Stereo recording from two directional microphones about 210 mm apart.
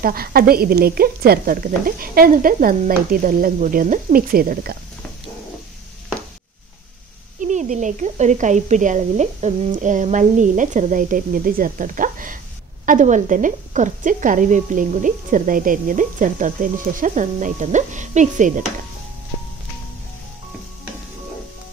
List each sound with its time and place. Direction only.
0.0 s speech: 45° right (ahead or behind)
7.3 s speech: 35° right (ahead or behind)